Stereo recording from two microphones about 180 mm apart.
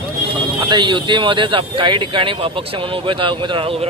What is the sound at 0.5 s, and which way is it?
Speech, 25° right (ahead or behind).